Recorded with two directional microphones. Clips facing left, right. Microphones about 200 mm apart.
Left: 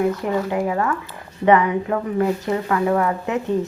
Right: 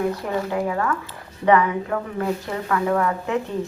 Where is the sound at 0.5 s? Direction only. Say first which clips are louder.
Left 2 dB; 20° left (ahead or behind).